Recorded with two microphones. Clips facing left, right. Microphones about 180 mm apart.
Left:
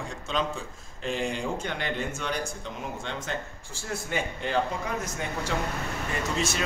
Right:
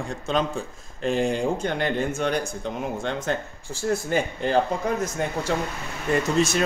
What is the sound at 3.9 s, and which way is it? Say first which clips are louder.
Speech: right 7 dB; 40° right (ahead or behind).